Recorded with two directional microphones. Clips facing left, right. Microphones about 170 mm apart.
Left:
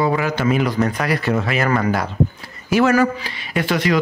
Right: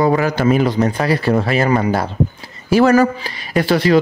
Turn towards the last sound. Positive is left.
turn(degrees=-35)  # may be behind; listen again after turning